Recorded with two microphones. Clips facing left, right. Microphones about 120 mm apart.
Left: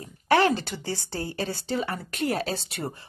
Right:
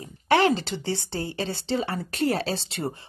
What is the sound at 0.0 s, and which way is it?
A woman's voice, 25° right (ahead or behind).